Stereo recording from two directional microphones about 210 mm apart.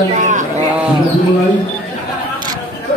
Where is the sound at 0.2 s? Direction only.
35° right (ahead or behind).